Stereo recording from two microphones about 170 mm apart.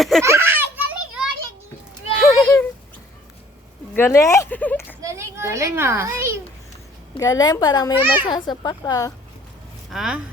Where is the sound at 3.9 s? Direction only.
15° left (ahead or behind).